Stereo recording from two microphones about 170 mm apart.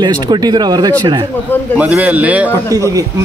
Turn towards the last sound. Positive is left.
turn(degrees=-20)  # may be behind; listen again after turning